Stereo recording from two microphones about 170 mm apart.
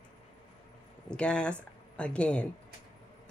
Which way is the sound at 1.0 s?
5° left (ahead or behind).